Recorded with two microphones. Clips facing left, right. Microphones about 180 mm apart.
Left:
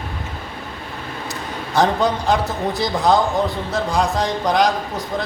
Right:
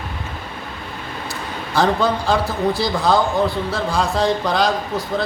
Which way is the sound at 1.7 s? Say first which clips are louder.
Even; 20° left (ahead or behind).